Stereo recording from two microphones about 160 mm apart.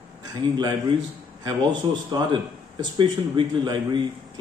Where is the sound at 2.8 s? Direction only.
30° right (ahead or behind).